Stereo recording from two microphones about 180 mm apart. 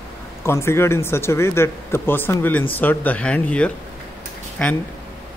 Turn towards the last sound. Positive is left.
turn(degrees=5)  # may be behind; listen again after turning